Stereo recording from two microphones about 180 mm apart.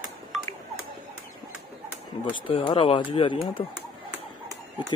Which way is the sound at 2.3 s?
30° left (ahead or behind).